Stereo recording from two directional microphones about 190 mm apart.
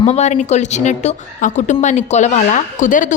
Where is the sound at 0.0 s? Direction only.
35° left (ahead or behind).